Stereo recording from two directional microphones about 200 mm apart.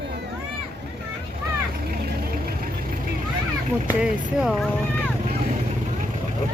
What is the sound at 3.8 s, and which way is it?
Speech, 5° right (ahead or behind).